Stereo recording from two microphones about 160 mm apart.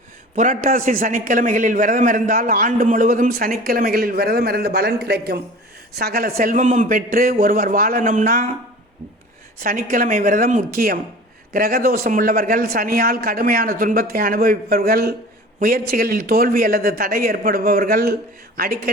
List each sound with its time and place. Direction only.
0.3 s a man's voice: 55° right (ahead or behind); by 5.4 s 90° right
5.9 s a man's voice: 75° right (ahead or behind); by 8.4 s 60° right (ahead or behind)
9.6 s a man's voice: 60° right (ahead or behind)